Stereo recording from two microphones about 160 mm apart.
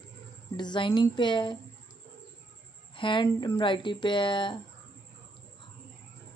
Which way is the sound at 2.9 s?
30° left (ahead or behind).